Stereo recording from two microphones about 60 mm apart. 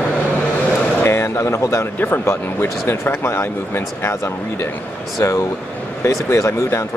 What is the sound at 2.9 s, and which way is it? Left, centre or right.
Speech, left.